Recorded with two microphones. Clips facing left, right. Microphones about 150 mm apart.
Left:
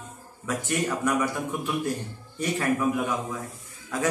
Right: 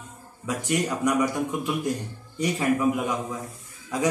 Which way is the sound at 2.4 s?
15° right (ahead or behind).